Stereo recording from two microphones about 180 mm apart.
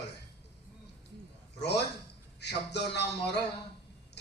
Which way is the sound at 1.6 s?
70° left (ahead or behind).